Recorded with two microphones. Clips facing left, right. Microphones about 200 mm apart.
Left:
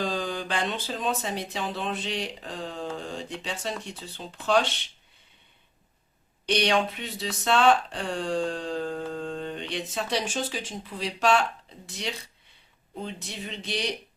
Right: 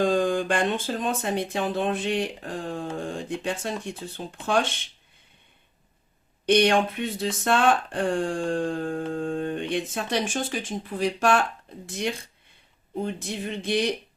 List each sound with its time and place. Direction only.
0.0 s speech: 50° right (ahead or behind)
6.4 s speech: 50° right (ahead or behind)